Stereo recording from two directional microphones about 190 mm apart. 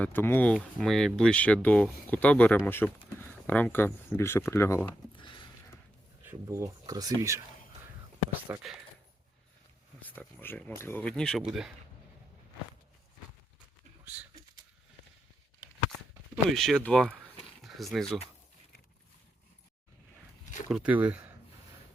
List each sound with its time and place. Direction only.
0.0 s speech: 10° left (ahead or behind)
5.1 s a sound: 25° left (ahead or behind)
6.2 s speech: 15° right (ahead or behind)
8.5 s speech: 15° right (ahead or behind)
10.0 s speech: 10° left (ahead or behind)
14.0 s a sound: 5° right (ahead or behind)
16.3 s speech: centre (ahead or behind)
20.7 s speech: 5° right (ahead or behind)